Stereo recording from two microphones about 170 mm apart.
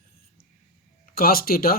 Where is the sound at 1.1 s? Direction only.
60° left (ahead or behind).